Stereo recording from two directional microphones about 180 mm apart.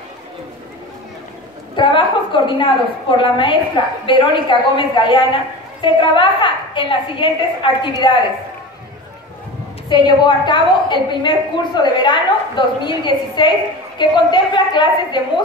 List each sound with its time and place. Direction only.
1.8 s a woman's voice: 25° left (ahead or behind)
9.8 s a woman's voice: 25° left (ahead or behind)